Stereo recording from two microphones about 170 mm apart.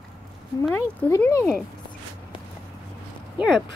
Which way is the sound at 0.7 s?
10° left (ahead or behind).